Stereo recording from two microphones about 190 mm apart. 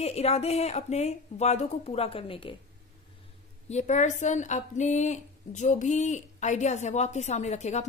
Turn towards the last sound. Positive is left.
turn(degrees=35)  # may be behind; listen again after turning